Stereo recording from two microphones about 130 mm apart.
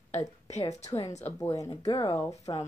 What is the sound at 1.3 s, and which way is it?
A woman's voice, 25° left (ahead or behind).